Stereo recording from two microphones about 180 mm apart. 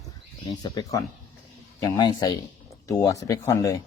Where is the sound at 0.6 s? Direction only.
20° left (ahead or behind).